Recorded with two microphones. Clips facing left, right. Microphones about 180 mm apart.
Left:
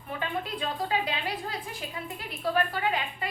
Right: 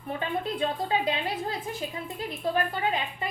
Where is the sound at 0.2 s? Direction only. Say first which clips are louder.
Right 4 dB; 30° right (ahead or behind).